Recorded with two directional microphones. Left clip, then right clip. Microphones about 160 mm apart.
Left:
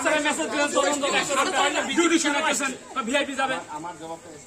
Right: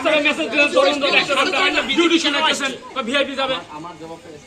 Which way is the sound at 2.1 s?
90° left.